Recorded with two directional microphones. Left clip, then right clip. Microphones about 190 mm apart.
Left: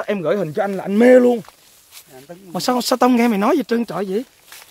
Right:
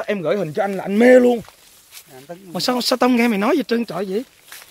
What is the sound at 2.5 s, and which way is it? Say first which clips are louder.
Speech: left 1 dB; 20° left (ahead or behind).